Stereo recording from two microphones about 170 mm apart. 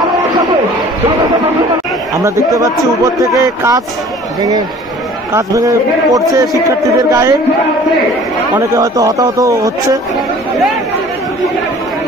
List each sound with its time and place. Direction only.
2.2 s speech: 20° right (ahead or behind)
8.5 s speech: 20° right (ahead or behind)